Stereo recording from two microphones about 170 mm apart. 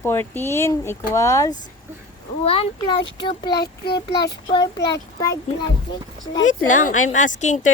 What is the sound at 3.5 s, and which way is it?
Speech, 70° left (ahead or behind).